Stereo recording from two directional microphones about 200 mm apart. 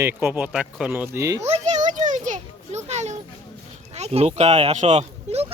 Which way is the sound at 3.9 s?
30° right (ahead or behind).